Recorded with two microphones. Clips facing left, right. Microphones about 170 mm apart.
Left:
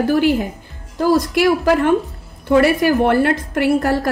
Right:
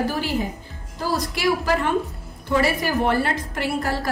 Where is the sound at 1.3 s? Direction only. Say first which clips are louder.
Left 7 dB; 55° left (ahead or behind).